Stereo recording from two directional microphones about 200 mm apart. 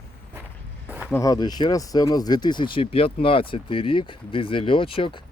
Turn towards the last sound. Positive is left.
turn(degrees=25)  # may be behind; listen again after turning